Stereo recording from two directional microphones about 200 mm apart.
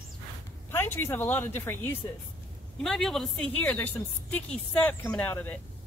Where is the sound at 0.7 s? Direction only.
10° left (ahead or behind).